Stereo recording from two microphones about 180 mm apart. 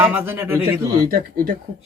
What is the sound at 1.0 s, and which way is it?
Speech, 50° right (ahead or behind).